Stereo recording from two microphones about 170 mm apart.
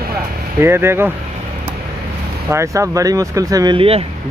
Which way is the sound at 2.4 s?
15° right (ahead or behind).